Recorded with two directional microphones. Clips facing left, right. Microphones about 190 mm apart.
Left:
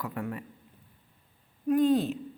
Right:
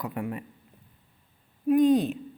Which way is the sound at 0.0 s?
20° right (ahead or behind).